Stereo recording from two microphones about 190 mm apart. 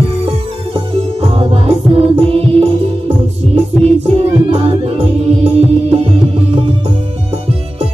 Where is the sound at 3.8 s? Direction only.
30° right (ahead or behind).